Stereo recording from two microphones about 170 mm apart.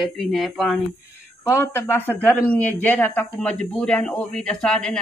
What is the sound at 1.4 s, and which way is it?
Speech, 15° left (ahead or behind).